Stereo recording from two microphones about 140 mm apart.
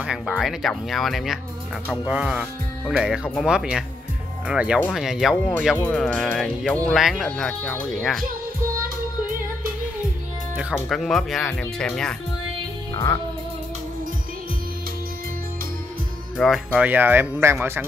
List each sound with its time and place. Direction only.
0.3 s speech: centre (ahead or behind)
5.8 s speech: 10° left (ahead or behind)
10.5 s speech: 5° right (ahead or behind)
12.9 s music: 20° left (ahead or behind)
16.3 s speech: centre (ahead or behind)
16.8 s speech: 10° right (ahead or behind)